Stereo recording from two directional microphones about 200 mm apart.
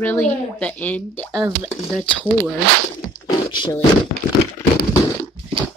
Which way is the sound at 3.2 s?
20° left (ahead or behind).